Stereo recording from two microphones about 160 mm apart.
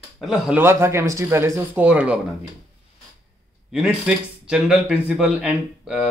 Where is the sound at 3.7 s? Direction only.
5° right (ahead or behind).